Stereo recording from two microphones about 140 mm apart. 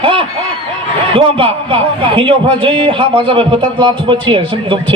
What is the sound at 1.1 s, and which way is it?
A man's voice, 40° right (ahead or behind).